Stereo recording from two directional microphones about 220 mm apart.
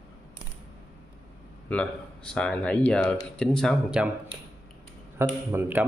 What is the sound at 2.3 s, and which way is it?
A man's voice, 5° left (ahead or behind).